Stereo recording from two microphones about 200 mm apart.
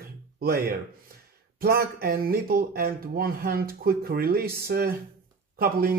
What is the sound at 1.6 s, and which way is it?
Speech, 50° right (ahead or behind).